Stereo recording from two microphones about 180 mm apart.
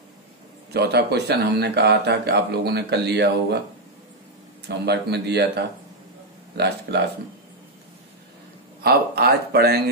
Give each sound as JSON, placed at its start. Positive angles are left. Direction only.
{"t": 0.7, "sound": "a man's voice", "side_deg": -65}
{"t": 4.6, "sound": "a man's voice", "side_deg": -65}
{"t": 6.5, "sound": "a man's voice", "side_deg": -70}
{"t": 8.8, "sound": "a man's voice", "side_deg": -60}